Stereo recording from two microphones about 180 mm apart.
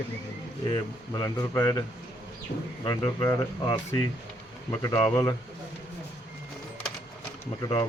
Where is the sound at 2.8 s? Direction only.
25° left (ahead or behind).